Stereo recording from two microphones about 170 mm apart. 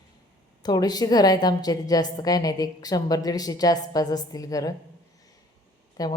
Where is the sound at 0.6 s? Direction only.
25° left (ahead or behind).